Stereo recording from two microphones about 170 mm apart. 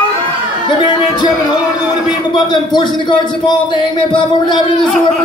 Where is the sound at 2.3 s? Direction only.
25° left (ahead or behind).